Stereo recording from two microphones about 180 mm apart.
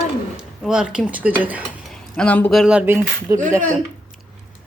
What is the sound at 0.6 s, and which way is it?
Speech, 5° right (ahead or behind).